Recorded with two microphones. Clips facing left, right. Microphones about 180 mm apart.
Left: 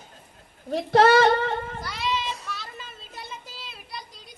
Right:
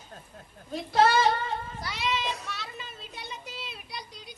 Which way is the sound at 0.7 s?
70° left (ahead or behind).